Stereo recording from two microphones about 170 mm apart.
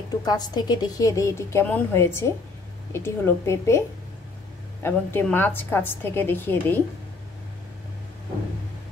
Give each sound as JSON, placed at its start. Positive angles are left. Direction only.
{"t": 0.2, "sound": "a woman's voice", "side_deg": 25}
{"t": 4.8, "sound": "a woman's voice", "side_deg": 10}